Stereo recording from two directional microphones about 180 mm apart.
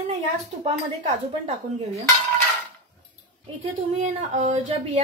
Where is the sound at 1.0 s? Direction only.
40° right (ahead or behind).